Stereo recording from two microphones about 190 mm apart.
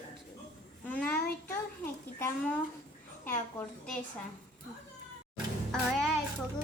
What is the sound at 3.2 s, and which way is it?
Speech, 10° left (ahead or behind).